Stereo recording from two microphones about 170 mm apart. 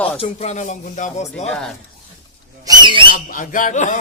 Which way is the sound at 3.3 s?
50° left (ahead or behind).